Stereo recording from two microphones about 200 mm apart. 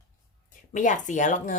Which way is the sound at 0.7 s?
40° left (ahead or behind).